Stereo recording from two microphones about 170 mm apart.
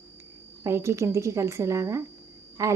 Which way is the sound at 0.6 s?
15° right (ahead or behind).